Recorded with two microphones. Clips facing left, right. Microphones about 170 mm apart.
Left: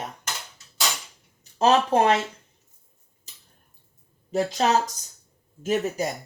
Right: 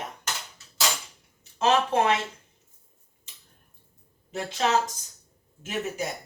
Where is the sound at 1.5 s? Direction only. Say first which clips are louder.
Left 3 dB; 35° left (ahead or behind).